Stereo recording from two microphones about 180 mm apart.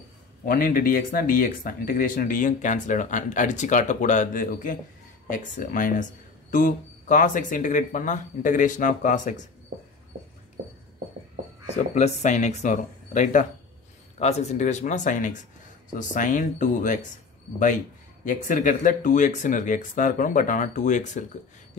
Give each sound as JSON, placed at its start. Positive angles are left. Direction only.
{"t": 0.5, "sound": "speech", "side_deg": 55}
{"t": 11.7, "sound": "speech", "side_deg": 40}
{"t": 18.2, "sound": "speech", "side_deg": 45}